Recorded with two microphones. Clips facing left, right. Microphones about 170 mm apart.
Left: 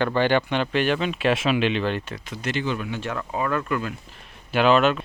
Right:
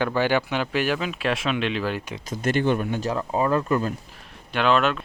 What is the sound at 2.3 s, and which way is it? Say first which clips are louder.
Speech: right 6 dB; 50° right (ahead or behind).